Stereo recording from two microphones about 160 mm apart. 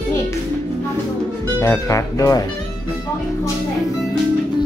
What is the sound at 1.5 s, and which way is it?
Speech, 20° left (ahead or behind).